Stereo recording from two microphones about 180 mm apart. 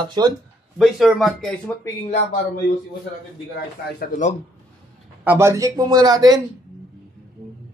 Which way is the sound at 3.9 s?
50° left (ahead or behind).